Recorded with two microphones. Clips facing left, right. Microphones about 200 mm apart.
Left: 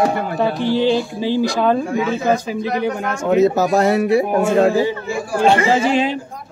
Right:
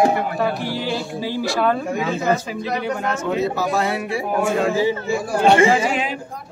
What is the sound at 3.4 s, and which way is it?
Speech, 45° left (ahead or behind).